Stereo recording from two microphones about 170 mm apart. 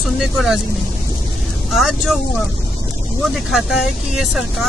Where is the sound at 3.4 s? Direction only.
Centre (ahead or behind).